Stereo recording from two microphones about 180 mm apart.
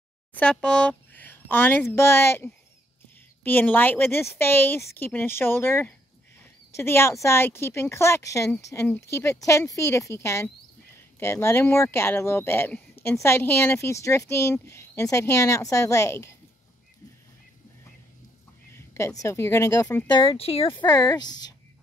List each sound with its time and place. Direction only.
0.3 s speech: 5° left (ahead or behind)
18.7 s a sound: 15° left (ahead or behind)
19.2 s speech: 15° left (ahead or behind)
20.1 s speech: 30° left (ahead or behind)
20.8 s speech: 20° left (ahead or behind)